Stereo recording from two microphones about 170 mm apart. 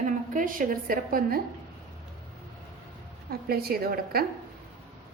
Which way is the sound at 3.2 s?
65° right (ahead or behind).